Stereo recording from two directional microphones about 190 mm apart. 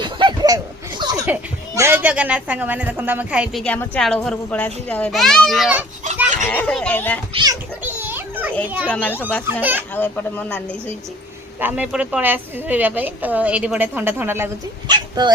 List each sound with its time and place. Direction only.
0.0 s a sound: 25° right (ahead or behind)
3.0 s a woman's voice: 10° right (ahead or behind); by 7.2 s 10° left (ahead or behind)
7.3 s a child's voice: 20° right (ahead or behind)
7.8 s children playing: 10° right (ahead or behind)
8.9 s speech: 10° left (ahead or behind)
9.6 s speech: 10° right (ahead or behind)
9.9 s speech: 10° left (ahead or behind)
11.6 s speech: 5° right (ahead or behind)
14.8 s dog: 25° right (ahead or behind)